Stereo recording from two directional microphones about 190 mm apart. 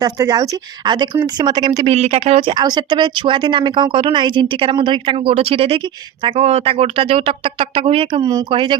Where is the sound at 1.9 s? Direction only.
30° right (ahead or behind).